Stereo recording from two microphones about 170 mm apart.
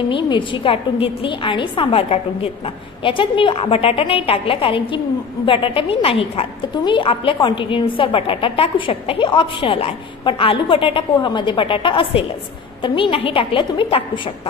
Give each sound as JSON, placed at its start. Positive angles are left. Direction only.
{"t": 0.1, "sound": "a woman's voice", "side_deg": 30}